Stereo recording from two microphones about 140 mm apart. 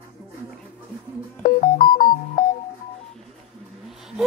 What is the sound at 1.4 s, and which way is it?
Keyboard, 90° left.